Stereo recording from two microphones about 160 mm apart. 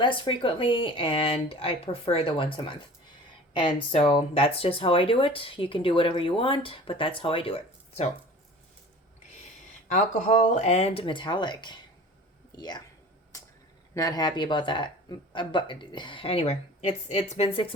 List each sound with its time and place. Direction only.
0.0 s speech: 30° left (ahead or behind)
9.9 s speech: 50° left (ahead or behind); by 12.8 s 25° left (ahead or behind)
13.9 s speech: 25° left (ahead or behind)